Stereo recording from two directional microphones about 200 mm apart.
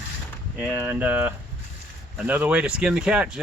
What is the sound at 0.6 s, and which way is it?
Speech, 5° right (ahead or behind).